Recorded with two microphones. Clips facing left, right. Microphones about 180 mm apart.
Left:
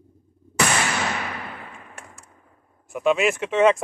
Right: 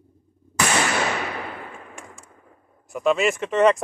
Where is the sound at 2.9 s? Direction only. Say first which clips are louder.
Even; centre (ahead or behind).